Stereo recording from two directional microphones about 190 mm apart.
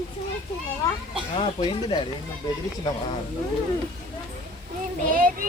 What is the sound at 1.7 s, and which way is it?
Speech, 25° left (ahead or behind).